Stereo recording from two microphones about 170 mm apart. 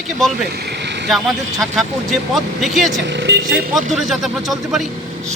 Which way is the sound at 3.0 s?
90° right.